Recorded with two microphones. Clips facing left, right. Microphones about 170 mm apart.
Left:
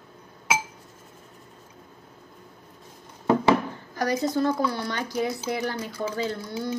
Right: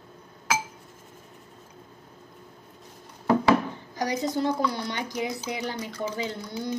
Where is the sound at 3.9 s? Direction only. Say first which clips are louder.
Left 3 dB; 20° right (ahead or behind).